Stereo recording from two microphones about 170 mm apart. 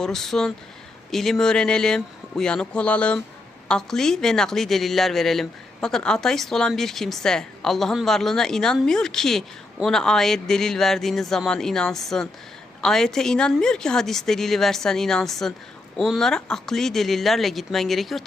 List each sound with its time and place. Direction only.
0.0 s a woman's voice: centre (ahead or behind)